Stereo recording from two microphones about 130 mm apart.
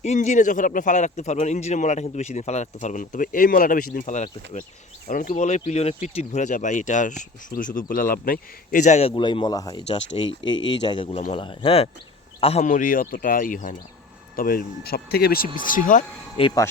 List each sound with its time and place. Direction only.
0.0 s a man's voice: 60° left (ahead or behind)
5.0 s speech: 90° left
5.3 s speech: 65° left (ahead or behind)
12.6 s speech: 90° left
15.5 s speech: 90° left
16.4 s speech: 45° left (ahead or behind)